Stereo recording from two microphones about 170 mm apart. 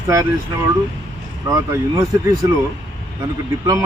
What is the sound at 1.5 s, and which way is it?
A man's voice, 20° right (ahead or behind).